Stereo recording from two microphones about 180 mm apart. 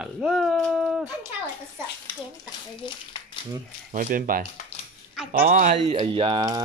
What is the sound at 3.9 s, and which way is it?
Speech, 50° right (ahead or behind).